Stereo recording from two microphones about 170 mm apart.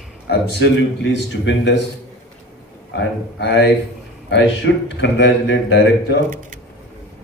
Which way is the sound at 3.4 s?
90° left.